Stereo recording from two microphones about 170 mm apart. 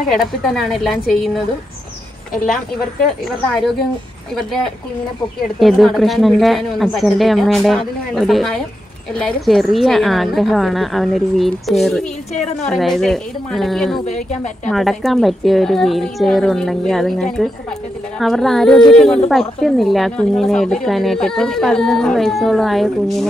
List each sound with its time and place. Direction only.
0.1 s speech: centre (ahead or behind)
5.6 s speech: centre (ahead or behind)
14.0 s a woman's voice: 45° left (ahead or behind)
14.7 s speech: centre (ahead or behind)